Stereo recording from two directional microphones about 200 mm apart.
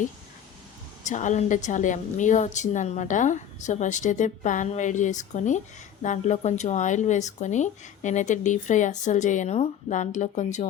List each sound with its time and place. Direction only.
1.0 s a woman's voice: 35° left (ahead or behind)